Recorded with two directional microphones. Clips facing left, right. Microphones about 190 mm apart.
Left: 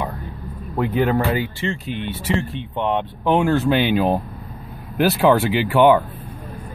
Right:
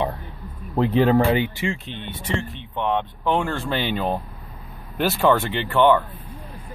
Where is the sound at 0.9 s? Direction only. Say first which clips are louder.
Right 2 dB; 35° right (ahead or behind).